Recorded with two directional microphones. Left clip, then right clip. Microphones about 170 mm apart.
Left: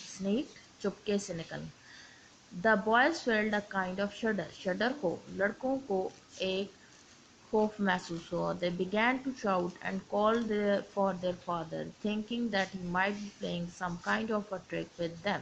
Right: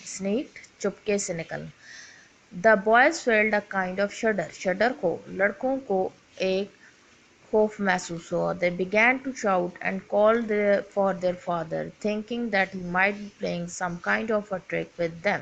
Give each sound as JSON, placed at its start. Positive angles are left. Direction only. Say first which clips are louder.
{"t": 0.8, "sound": "speech", "louder": "right 7 dB", "side_deg": -30}